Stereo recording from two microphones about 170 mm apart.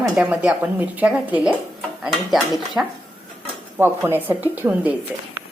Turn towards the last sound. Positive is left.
turn(degrees=-10)  # may be behind; listen again after turning